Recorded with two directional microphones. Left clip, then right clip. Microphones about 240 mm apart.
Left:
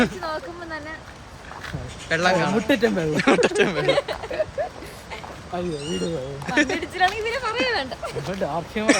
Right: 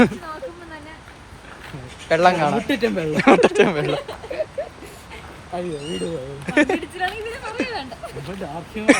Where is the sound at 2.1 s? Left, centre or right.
Centre.